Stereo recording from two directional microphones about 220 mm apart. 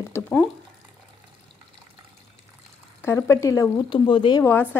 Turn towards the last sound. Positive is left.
turn(degrees=10)  # may be behind; listen again after turning